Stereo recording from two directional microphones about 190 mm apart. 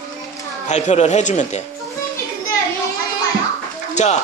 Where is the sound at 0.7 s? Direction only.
40° left (ahead or behind).